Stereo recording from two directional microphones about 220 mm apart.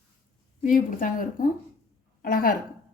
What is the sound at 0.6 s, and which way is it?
A woman's voice, 35° left (ahead or behind).